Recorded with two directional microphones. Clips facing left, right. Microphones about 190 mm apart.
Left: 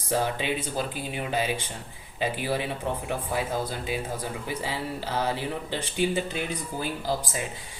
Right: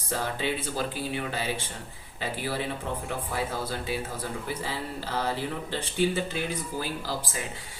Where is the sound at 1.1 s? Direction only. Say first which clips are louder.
Left 3 dB; 15° left (ahead or behind).